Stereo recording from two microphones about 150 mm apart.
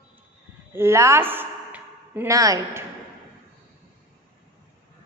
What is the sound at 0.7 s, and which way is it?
Speech, 20° right (ahead or behind).